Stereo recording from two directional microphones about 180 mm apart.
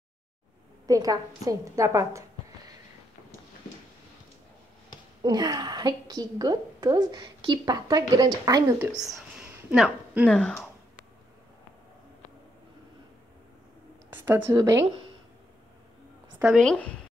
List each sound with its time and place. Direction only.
0.8 s a woman's voice: 20° right (ahead or behind)
5.2 s a woman's voice: 20° right (ahead or behind)
9.0 s a sound: 5° right (ahead or behind)
10.2 s a woman's voice: 5° left (ahead or behind)
14.1 s speech: 15° right (ahead or behind)
16.3 s a woman's voice: centre (ahead or behind)